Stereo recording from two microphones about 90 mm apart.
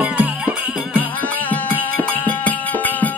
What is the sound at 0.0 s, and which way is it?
Music, 15° right (ahead or behind).